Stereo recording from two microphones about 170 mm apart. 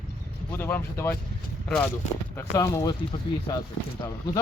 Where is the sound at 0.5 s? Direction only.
15° left (ahead or behind).